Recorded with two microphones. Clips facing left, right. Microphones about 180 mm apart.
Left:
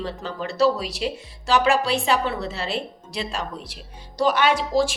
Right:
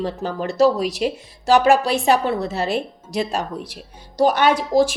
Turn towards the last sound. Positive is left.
turn(degrees=-45)  # may be behind; listen again after turning